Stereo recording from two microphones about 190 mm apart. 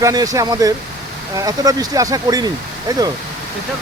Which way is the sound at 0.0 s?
20° right (ahead or behind).